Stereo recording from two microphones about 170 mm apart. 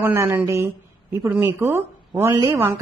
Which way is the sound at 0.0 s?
15° right (ahead or behind).